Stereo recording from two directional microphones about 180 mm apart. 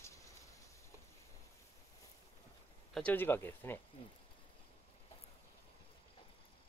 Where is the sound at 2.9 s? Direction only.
10° left (ahead or behind).